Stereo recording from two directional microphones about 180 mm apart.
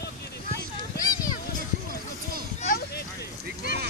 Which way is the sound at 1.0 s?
20° left (ahead or behind).